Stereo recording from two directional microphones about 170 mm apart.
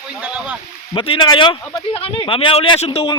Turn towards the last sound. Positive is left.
turn(degrees=30)  # may be behind; listen again after turning